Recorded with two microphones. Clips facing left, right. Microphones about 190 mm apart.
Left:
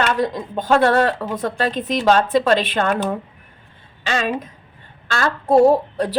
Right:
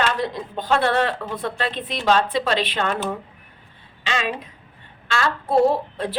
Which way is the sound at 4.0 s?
45° left (ahead or behind).